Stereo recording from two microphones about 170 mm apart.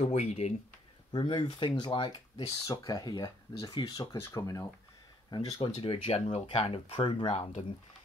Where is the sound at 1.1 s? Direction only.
30° left (ahead or behind).